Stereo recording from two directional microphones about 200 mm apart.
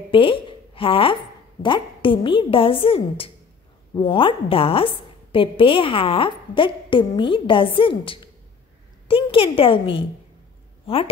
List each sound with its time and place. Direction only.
0.1 s a woman's voice: 25° left (ahead or behind)